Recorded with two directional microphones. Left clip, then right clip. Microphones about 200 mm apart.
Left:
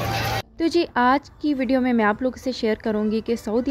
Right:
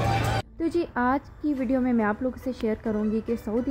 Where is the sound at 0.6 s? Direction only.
25° left (ahead or behind).